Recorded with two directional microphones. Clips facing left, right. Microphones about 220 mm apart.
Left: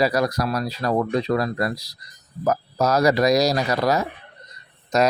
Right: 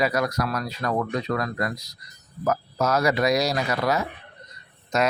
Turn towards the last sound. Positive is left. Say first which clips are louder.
# left 4 dB
turn(degrees=35)  # may be behind; listen again after turning